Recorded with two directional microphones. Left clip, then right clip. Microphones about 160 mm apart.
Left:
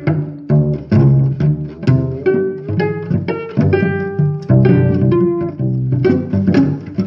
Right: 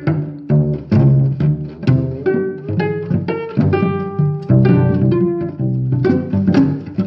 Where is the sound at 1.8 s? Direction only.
10° left (ahead or behind).